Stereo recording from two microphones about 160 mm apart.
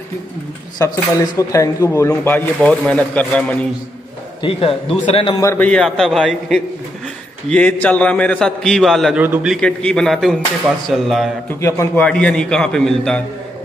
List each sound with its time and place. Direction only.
0.7 s speech: 20° left (ahead or behind)
4.4 s a man's voice: 35° left (ahead or behind)
5.4 s a man's voice: 15° left (ahead or behind); by 9.6 s 10° right (ahead or behind)
9.6 s a man's voice: 5° left (ahead or behind)
11.6 s speech: 15° left (ahead or behind)